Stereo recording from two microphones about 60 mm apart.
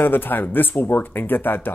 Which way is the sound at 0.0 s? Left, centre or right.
Left.